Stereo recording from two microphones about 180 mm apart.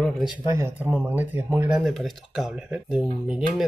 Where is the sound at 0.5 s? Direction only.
15° right (ahead or behind).